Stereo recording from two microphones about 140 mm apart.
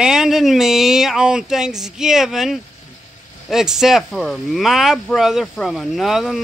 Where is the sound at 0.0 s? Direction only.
5° right (ahead or behind).